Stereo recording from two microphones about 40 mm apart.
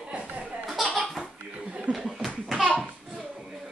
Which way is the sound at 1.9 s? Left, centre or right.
Right.